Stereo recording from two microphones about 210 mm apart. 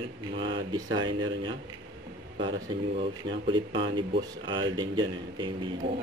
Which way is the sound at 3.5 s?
25° right (ahead or behind).